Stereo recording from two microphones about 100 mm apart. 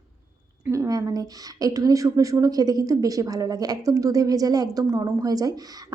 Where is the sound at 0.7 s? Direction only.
35° right (ahead or behind).